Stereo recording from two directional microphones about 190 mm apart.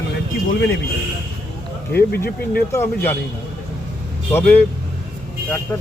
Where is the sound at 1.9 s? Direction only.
55° left (ahead or behind).